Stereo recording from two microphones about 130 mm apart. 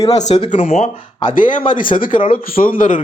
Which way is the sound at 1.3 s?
90° left.